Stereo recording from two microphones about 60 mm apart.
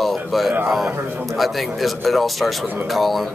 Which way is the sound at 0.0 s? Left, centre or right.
Centre.